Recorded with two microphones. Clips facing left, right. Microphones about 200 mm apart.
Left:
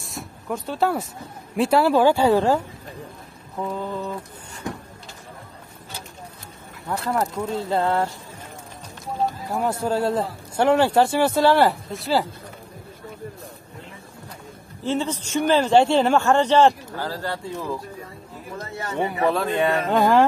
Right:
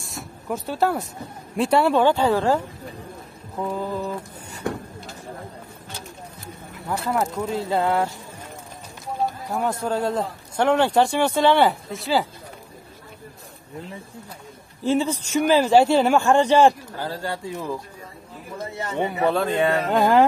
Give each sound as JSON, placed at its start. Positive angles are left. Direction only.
{"t": 0.0, "sound": "a sound", "side_deg": 0}
{"t": 1.6, "sound": "speech", "side_deg": 0}
{"t": 3.5, "sound": "a sound", "side_deg": -5}
{"t": 6.9, "sound": "speech", "side_deg": 0}
{"t": 9.5, "sound": "speech", "side_deg": 5}
{"t": 14.8, "sound": "speech", "side_deg": -10}
{"t": 19.2, "sound": "speech", "side_deg": -35}
{"t": 19.9, "sound": "speech", "side_deg": 0}